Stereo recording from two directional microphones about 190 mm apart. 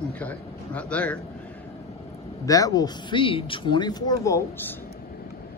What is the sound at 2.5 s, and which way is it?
Speech, 20° left (ahead or behind).